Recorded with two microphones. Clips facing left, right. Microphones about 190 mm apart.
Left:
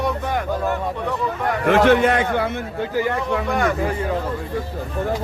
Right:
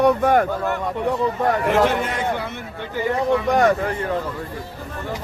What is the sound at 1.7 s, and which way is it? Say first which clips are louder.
Speech: left 4 dB; 75° left (ahead or behind).